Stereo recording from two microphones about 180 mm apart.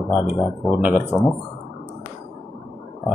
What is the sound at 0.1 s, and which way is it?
Speech, centre (ahead or behind).